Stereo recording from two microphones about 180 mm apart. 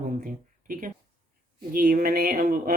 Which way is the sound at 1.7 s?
55° right (ahead or behind).